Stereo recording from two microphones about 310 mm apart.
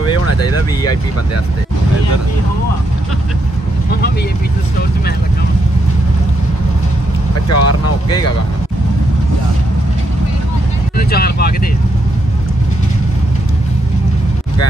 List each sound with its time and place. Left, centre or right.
0.3 s speech: left
7.4 s speech: left
11.0 s speech: left